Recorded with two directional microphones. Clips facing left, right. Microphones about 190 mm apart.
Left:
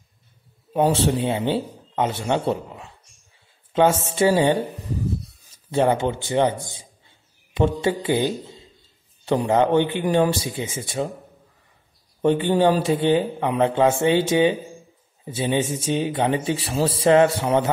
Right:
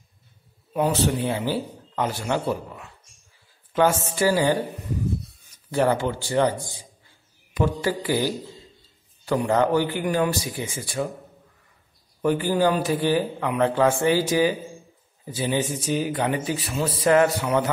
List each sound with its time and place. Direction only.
0.7 s speech: 25° left (ahead or behind)
5.7 s a man's voice: 20° left (ahead or behind)
12.2 s speech: 25° left (ahead or behind)